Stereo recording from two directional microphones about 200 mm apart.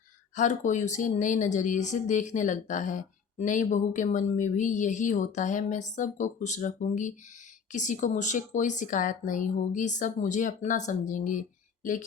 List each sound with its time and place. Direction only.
0.3 s speech: 40° left (ahead or behind)